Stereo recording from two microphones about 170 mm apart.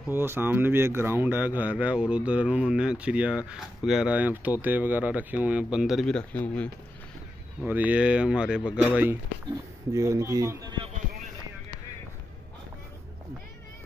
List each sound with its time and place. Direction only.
0.1 s speech: 15° right (ahead or behind); by 6.7 s 10° left (ahead or behind)
7.6 s speech: 10° right (ahead or behind)